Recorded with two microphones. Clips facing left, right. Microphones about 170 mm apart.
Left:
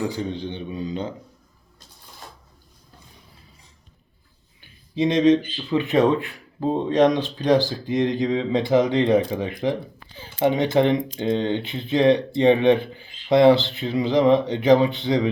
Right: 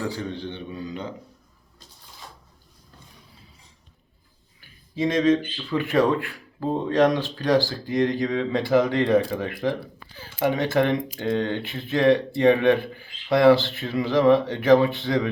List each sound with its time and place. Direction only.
0.0 s a man's voice: 15° left (ahead or behind)
4.9 s speech: 20° left (ahead or behind)